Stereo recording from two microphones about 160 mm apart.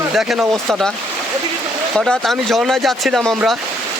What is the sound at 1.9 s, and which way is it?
Speech, centre (ahead or behind).